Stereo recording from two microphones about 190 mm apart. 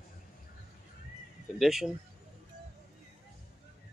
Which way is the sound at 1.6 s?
Centre (ahead or behind).